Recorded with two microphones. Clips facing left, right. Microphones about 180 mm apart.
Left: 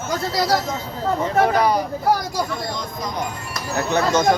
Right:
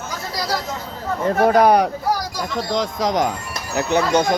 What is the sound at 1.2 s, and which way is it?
Speech, 50° right (ahead or behind).